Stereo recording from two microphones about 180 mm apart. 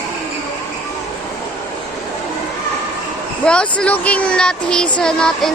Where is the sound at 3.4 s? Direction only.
5° left (ahead or behind).